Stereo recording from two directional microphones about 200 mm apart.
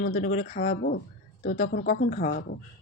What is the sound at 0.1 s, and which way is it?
Speech, 35° left (ahead or behind).